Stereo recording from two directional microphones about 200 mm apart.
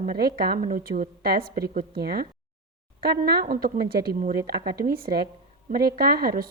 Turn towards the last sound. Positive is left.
turn(degrees=-50)  # may be behind; listen again after turning